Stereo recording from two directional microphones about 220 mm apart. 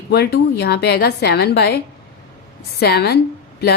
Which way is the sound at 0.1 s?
45° left (ahead or behind).